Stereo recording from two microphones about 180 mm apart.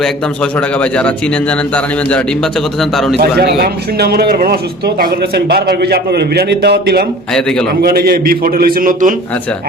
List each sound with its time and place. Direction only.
0.8 s a man's voice: 5° left (ahead or behind)
3.2 s a man's voice: 60° right (ahead or behind)